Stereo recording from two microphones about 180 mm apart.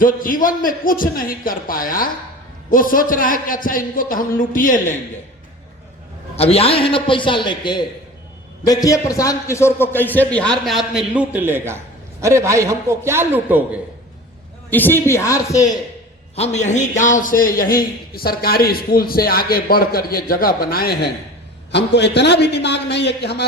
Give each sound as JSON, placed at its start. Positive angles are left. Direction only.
{"t": 0.0, "sound": "a man's voice", "side_deg": 50}
{"t": 6.3, "sound": "a man's voice", "side_deg": 35}
{"t": 14.7, "sound": "a man's voice", "side_deg": 10}
{"t": 16.3, "sound": "a man's voice", "side_deg": 35}
{"t": 21.7, "sound": "a man's voice", "side_deg": 70}